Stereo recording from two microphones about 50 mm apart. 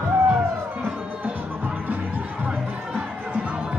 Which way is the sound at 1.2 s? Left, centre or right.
Right.